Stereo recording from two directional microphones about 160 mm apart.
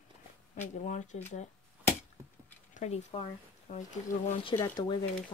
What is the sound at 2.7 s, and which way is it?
Speech, 45° left (ahead or behind).